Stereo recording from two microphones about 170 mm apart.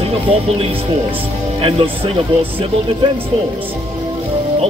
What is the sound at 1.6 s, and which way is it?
Speech, 30° right (ahead or behind).